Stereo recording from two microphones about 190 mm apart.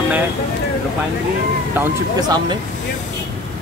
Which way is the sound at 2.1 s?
20° right (ahead or behind).